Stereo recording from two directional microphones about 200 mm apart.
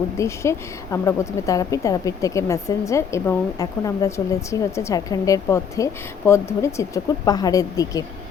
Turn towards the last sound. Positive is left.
turn(degrees=20)  # may be behind; listen again after turning